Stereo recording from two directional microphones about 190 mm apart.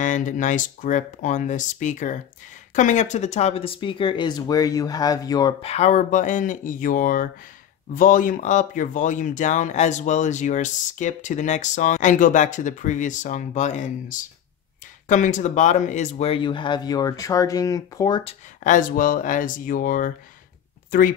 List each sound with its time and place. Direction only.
0.0 s speech: 40° left (ahead or behind); by 18.2 s 20° left (ahead or behind)
18.2 s speech: 45° left (ahead or behind)